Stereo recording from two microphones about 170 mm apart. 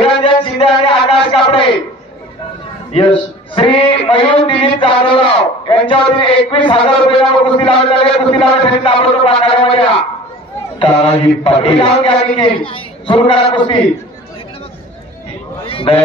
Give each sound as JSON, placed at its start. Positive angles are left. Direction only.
{"t": 0.0, "sound": "music", "side_deg": 30}
{"t": 0.7, "sound": "a sound", "side_deg": 30}
{"t": 2.9, "sound": "a man's voice", "side_deg": 30}
{"t": 11.4, "sound": "a man's voice", "side_deg": 35}
{"t": 15.6, "sound": "a man's voice", "side_deg": 30}